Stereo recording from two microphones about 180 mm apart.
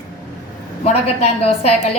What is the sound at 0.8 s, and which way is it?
A woman's voice, 35° left (ahead or behind).